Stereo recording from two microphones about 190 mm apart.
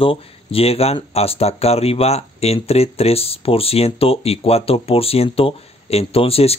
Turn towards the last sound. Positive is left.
turn(degrees=30)  # may be behind; listen again after turning